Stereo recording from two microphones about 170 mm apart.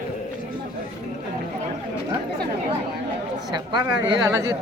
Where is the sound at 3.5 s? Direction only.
25° right (ahead or behind).